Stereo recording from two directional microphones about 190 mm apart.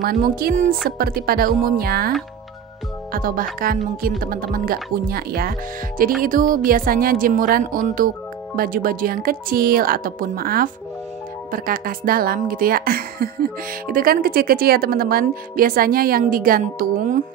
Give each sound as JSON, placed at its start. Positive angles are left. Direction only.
{"t": 0.0, "sound": "speech", "side_deg": -50}
{"t": 3.1, "sound": "music", "side_deg": -50}
{"t": 3.5, "sound": "speech", "side_deg": -50}